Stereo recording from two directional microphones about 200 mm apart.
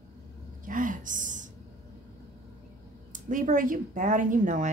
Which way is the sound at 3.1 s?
40° right (ahead or behind).